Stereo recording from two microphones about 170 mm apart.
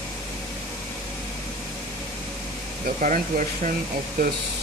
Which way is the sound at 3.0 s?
50° right (ahead or behind).